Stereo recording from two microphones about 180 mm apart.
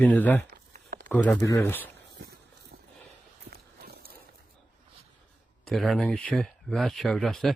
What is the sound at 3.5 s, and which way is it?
Horse, 60° right (ahead or behind).